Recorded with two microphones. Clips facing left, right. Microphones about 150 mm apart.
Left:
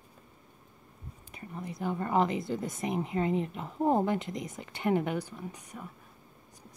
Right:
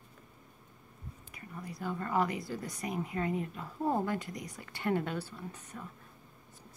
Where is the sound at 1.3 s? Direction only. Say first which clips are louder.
Left 5 dB; 25° left (ahead or behind).